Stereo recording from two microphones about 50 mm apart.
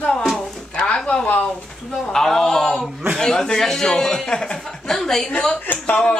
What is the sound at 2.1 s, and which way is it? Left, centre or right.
Speech, centre.